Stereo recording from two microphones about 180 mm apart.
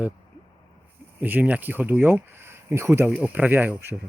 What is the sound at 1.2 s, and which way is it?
Speech, 10° right (ahead or behind).